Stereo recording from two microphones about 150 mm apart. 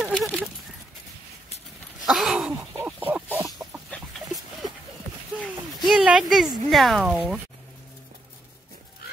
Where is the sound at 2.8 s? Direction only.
15° right (ahead or behind).